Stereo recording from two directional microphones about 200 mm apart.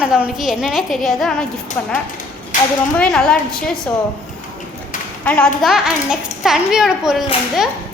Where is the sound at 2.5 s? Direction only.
40° left (ahead or behind).